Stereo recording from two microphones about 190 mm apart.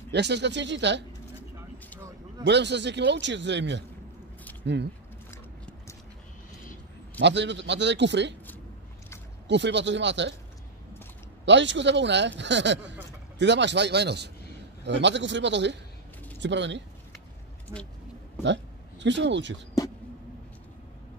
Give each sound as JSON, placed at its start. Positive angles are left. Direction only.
{"t": 0.1, "sound": "speech", "side_deg": -65}
{"t": 2.4, "sound": "speech", "side_deg": -65}
{"t": 5.3, "sound": "a sound", "side_deg": 15}
{"t": 7.2, "sound": "speech", "side_deg": -70}
{"t": 9.5, "sound": "speech", "side_deg": -65}
{"t": 11.4, "sound": "speech", "side_deg": -70}
{"t": 18.4, "sound": "speech", "side_deg": -70}